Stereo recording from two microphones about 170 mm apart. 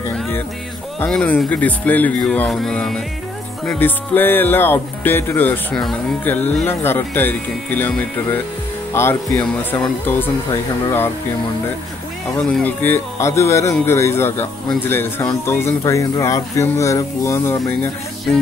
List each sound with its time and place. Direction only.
0.9 s speech: 10° left (ahead or behind)
12.4 s speech: 10° left (ahead or behind)